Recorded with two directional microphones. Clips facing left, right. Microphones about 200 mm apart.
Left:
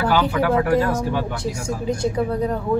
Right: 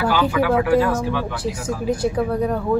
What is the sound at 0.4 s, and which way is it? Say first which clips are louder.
Speech: right 4 dB; 45° left (ahead or behind).